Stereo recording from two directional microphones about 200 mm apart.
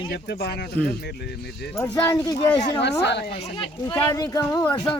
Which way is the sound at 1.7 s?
10° left (ahead or behind).